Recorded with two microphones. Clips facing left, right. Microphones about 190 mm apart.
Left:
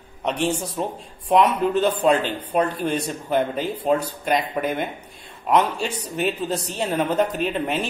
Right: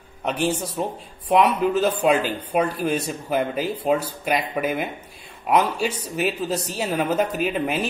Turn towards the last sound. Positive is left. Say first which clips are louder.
# even
turn(degrees=-5)  # may be behind; listen again after turning